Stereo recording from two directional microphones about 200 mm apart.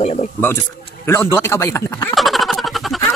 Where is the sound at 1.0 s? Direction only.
10° left (ahead or behind).